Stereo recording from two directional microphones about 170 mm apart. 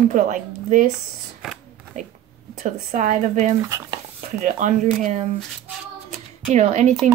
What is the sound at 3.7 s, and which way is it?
Speech, 15° right (ahead or behind).